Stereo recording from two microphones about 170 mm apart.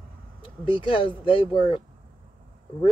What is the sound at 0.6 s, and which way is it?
Speech, 30° left (ahead or behind).